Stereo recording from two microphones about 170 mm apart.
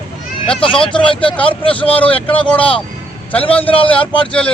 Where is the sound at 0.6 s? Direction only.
30° left (ahead or behind).